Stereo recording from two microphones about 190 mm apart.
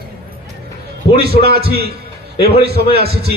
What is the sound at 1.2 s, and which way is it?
A man's voice, 55° right (ahead or behind).